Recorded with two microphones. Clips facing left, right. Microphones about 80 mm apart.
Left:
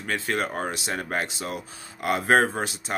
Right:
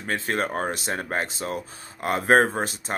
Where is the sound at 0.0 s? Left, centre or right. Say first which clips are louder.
Right 1 dB; right.